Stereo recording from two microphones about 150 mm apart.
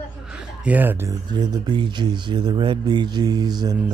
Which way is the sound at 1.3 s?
30° right (ahead or behind).